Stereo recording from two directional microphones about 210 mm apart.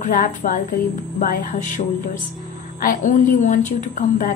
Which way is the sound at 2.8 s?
40° left (ahead or behind).